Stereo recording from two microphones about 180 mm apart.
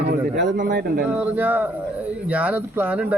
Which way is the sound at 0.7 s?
60° right (ahead or behind).